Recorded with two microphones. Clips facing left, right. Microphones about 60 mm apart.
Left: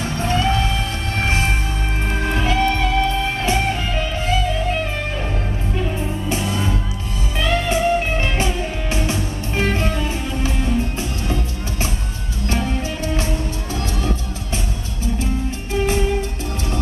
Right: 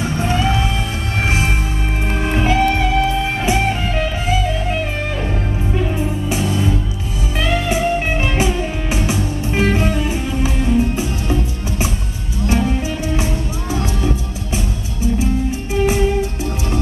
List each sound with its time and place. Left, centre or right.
0.0 s music: centre
2.5 s music: centre
5.8 s music: centre
12.5 s music: centre
15.7 s music: centre